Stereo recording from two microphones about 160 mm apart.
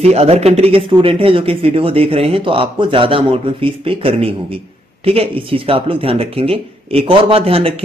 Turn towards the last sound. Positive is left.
turn(degrees=-35)  # may be behind; listen again after turning